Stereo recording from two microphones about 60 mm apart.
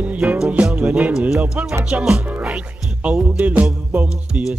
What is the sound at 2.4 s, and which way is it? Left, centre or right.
Speech, centre.